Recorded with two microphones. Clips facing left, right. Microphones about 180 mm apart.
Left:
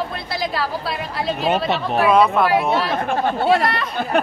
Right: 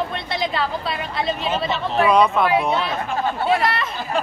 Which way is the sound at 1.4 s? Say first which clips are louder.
Left 4 dB; 65° left (ahead or behind).